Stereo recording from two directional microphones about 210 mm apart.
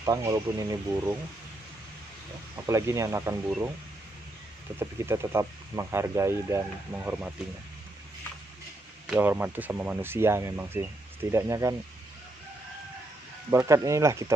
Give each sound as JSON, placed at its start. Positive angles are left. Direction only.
{"t": 0.0, "sound": "speech", "side_deg": -15}
{"t": 2.7, "sound": "speech", "side_deg": -15}
{"t": 4.7, "sound": "speech", "side_deg": -10}
{"t": 9.1, "sound": "speech", "side_deg": -10}
{"t": 13.5, "sound": "speech", "side_deg": -15}